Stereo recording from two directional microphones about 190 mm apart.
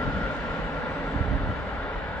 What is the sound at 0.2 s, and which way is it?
Vehicle, 10° left (ahead or behind).